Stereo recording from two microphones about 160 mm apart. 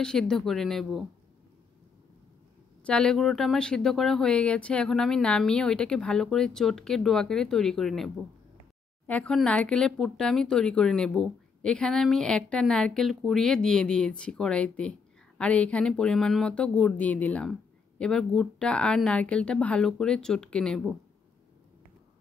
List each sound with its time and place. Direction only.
0.0 s speech: 5° left (ahead or behind)
2.8 s speech: 5° left (ahead or behind)